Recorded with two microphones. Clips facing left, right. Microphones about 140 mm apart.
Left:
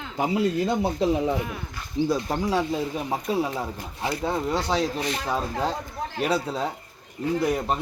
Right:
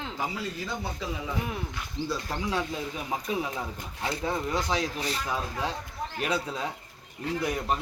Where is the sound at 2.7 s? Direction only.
30° left (ahead or behind).